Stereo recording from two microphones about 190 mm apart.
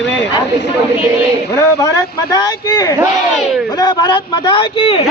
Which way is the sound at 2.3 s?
15° left (ahead or behind).